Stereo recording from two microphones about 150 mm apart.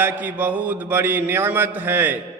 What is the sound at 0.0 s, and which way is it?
A man's voice, 10° right (ahead or behind).